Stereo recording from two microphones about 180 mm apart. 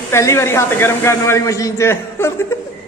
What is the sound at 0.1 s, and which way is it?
A man's voice, 15° left (ahead or behind).